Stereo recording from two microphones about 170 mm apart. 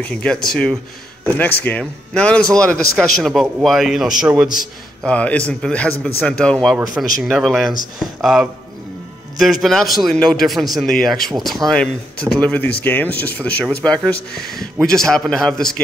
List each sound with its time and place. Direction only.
0.0 s a man's voice: 5° left (ahead or behind)
5.0 s a man's voice: 10° left (ahead or behind)